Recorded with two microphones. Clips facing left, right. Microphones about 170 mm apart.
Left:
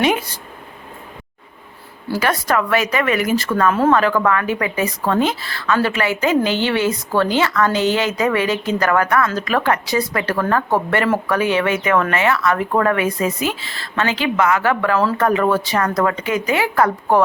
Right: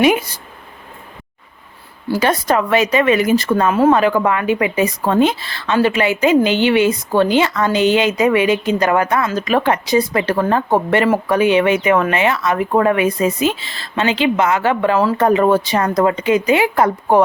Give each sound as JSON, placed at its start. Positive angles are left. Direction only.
{"t": 2.1, "sound": "speech", "side_deg": -20}